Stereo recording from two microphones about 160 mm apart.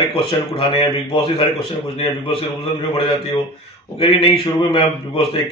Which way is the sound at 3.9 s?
35° left (ahead or behind).